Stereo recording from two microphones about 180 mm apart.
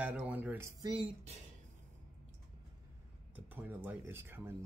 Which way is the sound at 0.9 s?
35° right (ahead or behind).